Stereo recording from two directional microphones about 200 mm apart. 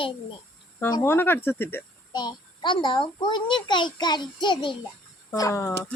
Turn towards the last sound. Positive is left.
turn(degrees=15)  # may be behind; listen again after turning